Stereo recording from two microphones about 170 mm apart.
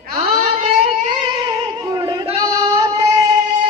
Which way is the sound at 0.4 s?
35° right (ahead or behind).